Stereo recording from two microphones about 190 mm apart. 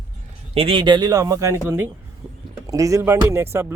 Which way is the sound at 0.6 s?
25° right (ahead or behind).